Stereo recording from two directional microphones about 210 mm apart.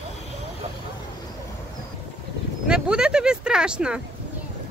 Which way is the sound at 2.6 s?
5° right (ahead or behind).